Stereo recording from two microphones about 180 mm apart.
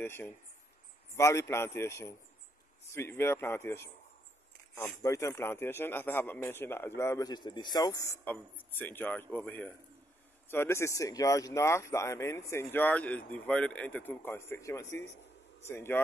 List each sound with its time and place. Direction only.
0.0 s a man's voice: 10° left (ahead or behind)